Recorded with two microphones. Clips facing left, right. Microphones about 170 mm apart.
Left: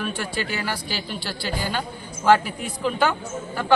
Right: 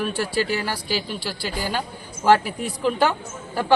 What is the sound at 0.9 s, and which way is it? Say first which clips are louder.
Speech: right 3 dB; 5° right (ahead or behind).